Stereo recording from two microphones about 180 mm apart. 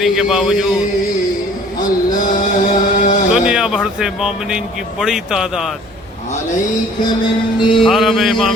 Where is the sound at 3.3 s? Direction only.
5° right (ahead or behind).